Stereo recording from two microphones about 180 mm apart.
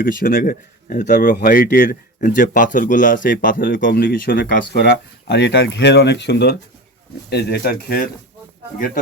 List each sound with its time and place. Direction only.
0.0 s speech: 50° left (ahead or behind)
1.4 s speech: 50° left (ahead or behind)